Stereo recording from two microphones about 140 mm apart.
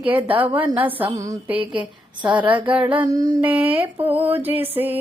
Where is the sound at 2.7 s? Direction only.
10° right (ahead or behind).